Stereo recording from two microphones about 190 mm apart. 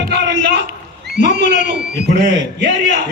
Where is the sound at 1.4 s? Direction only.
40° left (ahead or behind).